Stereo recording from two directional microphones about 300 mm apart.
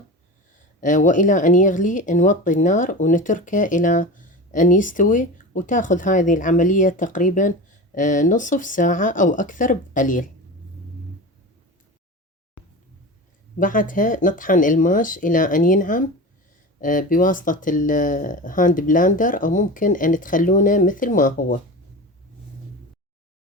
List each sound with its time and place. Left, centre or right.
0.8 s speech: left
12.6 s a sound: left
13.6 s speech: left